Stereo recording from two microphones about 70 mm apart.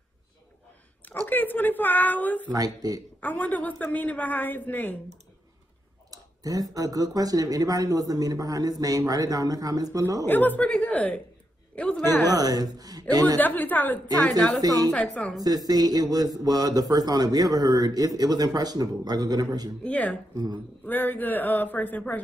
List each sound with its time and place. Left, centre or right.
1.0 s speech: left
2.5 s a man's voice: right
3.2 s speech: left
6.0 s a man's voice: right
10.2 s a man's voice: left
12.3 s a man's voice: right
13.4 s speech: left
14.6 s a man's voice: right
19.8 s speech: centre
20.3 s speech: right
20.8 s speech: left